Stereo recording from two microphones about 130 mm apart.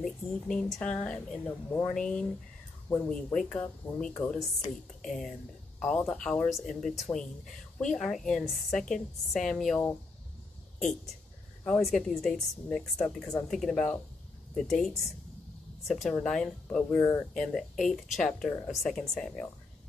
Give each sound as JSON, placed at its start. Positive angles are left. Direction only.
{"t": 0.0, "sound": "speech", "side_deg": 5}
{"t": 1.7, "sound": "speech", "side_deg": 20}
{"t": 2.0, "sound": "a woman's voice", "side_deg": 5}
{"t": 11.6, "sound": "a woman's voice", "side_deg": 5}
{"t": 16.9, "sound": "speech", "side_deg": 20}
{"t": 17.4, "sound": "a woman's voice", "side_deg": 5}